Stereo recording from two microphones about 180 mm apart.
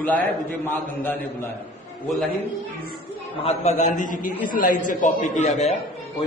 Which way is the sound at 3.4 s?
40° left (ahead or behind).